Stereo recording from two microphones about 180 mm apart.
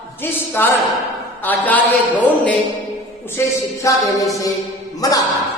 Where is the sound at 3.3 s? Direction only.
15° left (ahead or behind).